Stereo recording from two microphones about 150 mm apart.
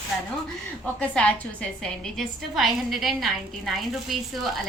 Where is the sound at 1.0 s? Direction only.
10° left (ahead or behind).